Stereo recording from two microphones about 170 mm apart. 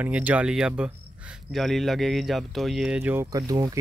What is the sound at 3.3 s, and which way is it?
Speech, 20° right (ahead or behind).